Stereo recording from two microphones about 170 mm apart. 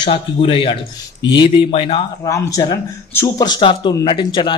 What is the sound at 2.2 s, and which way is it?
Speech, 20° left (ahead or behind).